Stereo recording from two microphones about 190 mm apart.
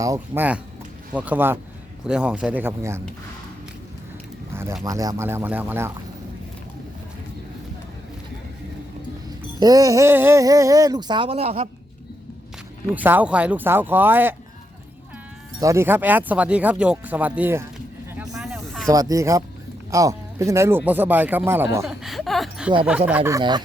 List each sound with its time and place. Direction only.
0.0 s speech: 15° right (ahead or behind)
4.8 s speech: 20° right (ahead or behind)
9.6 s speech: 20° right (ahead or behind)
12.9 s speech: 10° right (ahead or behind)
15.6 s speech: 15° right (ahead or behind)
18.3 s snake: centre (ahead or behind)
18.9 s speech: 20° right (ahead or behind)
21.8 s a sound: centre (ahead or behind)
22.9 s speech: 10° right (ahead or behind)